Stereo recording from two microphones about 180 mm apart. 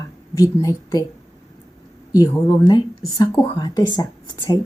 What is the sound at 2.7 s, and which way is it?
A woman's voice, 25° left (ahead or behind).